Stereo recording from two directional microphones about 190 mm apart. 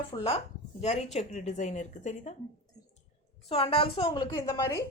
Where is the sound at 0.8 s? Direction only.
35° left (ahead or behind).